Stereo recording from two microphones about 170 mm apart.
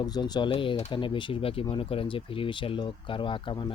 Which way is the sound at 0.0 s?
25° left (ahead or behind).